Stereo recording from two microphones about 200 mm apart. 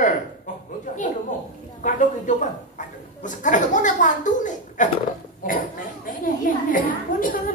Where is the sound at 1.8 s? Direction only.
40° left (ahead or behind).